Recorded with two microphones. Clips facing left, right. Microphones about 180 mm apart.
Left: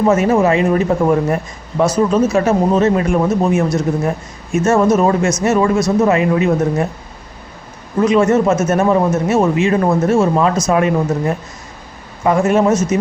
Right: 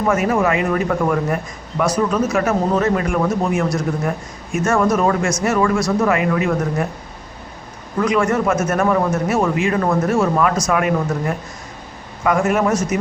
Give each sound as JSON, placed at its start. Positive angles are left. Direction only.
{"t": 0.1, "sound": "a man's voice", "side_deg": 25}
{"t": 7.9, "sound": "a man's voice", "side_deg": 25}